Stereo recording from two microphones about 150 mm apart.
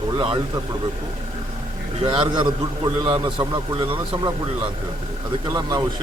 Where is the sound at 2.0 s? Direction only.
35° right (ahead or behind).